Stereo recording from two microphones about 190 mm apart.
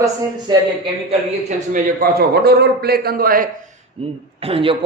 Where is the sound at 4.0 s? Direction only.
30° right (ahead or behind).